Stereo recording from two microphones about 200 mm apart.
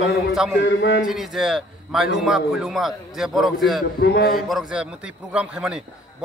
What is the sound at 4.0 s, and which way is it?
Speech, 50° left (ahead or behind).